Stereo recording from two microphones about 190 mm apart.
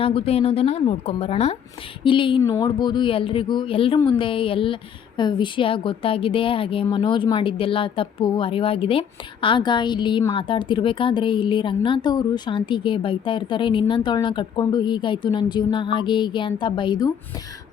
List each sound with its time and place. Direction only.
0.0 s speech: 30° left (ahead or behind)